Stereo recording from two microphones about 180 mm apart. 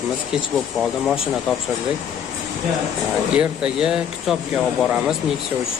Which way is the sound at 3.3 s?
5° right (ahead or behind).